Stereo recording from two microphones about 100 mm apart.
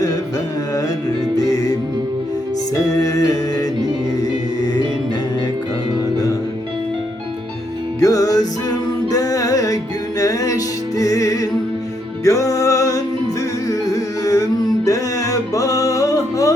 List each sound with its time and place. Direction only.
1.5 s music: 35° left (ahead or behind)
2.7 s music: 35° left (ahead or behind)
8.0 s music: 35° left (ahead or behind)